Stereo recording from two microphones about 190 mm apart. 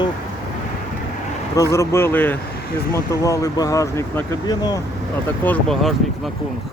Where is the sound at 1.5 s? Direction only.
15° left (ahead or behind).